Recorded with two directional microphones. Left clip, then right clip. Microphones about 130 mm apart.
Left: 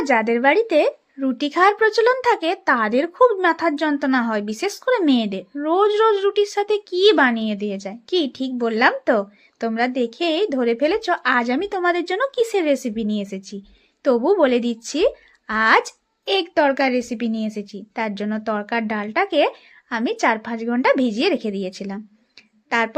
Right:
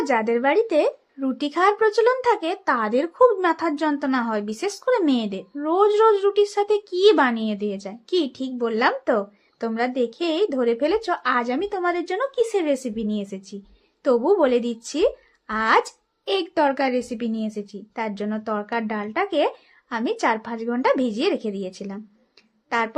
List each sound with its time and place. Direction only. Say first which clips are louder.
0.0 s a woman's voice: left 3 dB; 20° left (ahead or behind)